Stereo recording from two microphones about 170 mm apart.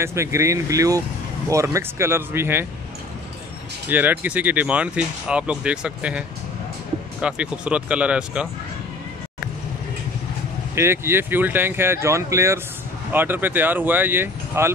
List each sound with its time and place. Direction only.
0.0 s speech: 15° right (ahead or behind)
3.9 s speech: 10° right (ahead or behind)
10.7 s speech: 15° right (ahead or behind)